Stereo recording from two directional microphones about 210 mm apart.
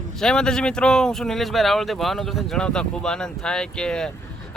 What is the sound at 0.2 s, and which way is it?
Speech, 5° left (ahead or behind).